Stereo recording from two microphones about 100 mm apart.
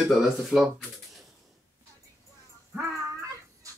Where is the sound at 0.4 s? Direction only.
5° right (ahead or behind).